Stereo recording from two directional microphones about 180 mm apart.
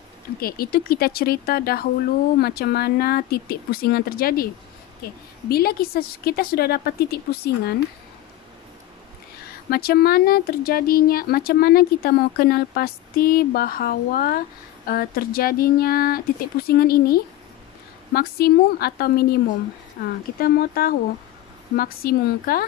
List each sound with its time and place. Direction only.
0.4 s speech: 55° left (ahead or behind)
5.5 s speech: 60° left (ahead or behind)
9.7 s speech: 55° left (ahead or behind)